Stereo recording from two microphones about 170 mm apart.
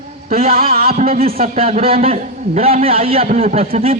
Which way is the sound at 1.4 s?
35° right (ahead or behind).